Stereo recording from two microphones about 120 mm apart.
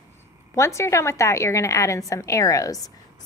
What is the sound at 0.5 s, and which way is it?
A woman's voice, 25° left (ahead or behind).